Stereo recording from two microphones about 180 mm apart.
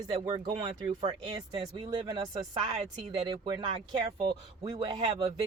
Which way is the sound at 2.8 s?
35° right (ahead or behind).